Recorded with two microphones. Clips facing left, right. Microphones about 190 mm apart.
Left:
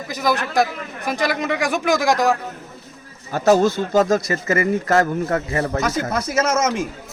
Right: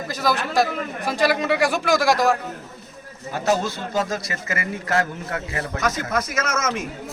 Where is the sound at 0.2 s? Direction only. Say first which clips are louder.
Left 2 dB; 15° left (ahead or behind).